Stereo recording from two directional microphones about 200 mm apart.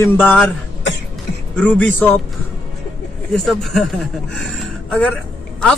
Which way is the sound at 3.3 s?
Centre (ahead or behind).